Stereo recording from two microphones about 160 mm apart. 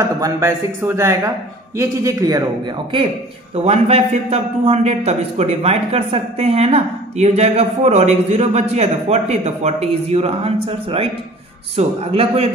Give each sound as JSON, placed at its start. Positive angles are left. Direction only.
{"t": 0.2, "sound": "speech", "side_deg": -20}
{"t": 3.5, "sound": "a man's voice", "side_deg": -40}